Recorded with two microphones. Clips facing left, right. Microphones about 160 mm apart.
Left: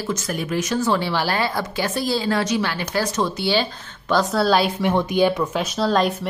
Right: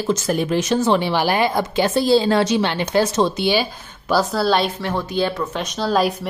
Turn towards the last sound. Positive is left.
turn(degrees=0)  # may be behind; listen again after turning